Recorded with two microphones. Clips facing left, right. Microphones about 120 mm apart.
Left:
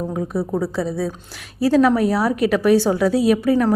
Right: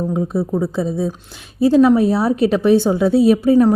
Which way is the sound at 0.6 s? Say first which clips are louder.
Right 3 dB; 20° right (ahead or behind).